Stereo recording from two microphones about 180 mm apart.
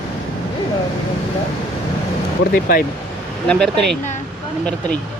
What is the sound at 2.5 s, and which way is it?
Speech, 50° left (ahead or behind).